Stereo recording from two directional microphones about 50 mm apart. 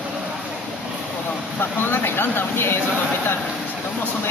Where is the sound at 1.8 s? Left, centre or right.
Left.